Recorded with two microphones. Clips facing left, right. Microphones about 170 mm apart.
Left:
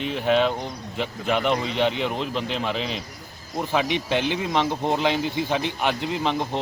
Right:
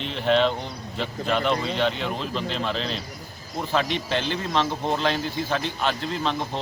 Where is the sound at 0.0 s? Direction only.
10° left (ahead or behind).